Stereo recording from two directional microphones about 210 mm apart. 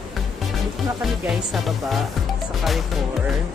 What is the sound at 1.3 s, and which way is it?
Speech, centre (ahead or behind).